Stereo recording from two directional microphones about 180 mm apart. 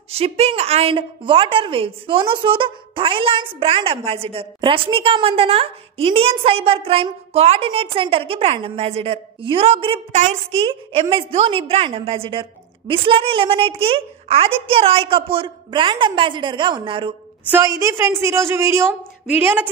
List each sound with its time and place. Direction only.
0.1 s a woman's voice: 35° right (ahead or behind)
17.5 s a woman's voice: 15° right (ahead or behind)